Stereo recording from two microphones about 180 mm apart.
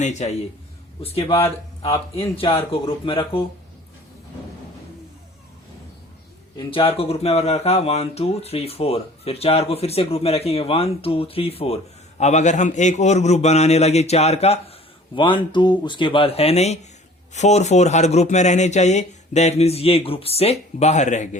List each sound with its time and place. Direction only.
0.0 s speech: 40° left (ahead or behind)
6.6 s speech: 30° left (ahead or behind)